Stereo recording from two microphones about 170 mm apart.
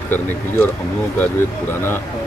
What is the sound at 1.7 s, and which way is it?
Speech, 15° left (ahead or behind).